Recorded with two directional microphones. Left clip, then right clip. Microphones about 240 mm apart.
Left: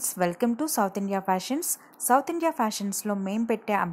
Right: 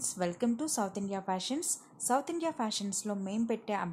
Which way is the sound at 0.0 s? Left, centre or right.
Centre.